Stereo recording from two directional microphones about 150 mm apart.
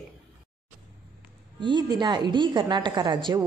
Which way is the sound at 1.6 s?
30° right (ahead or behind).